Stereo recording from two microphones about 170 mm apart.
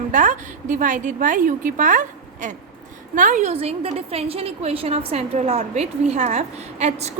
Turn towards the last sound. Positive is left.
turn(degrees=-40)  # may be behind; listen again after turning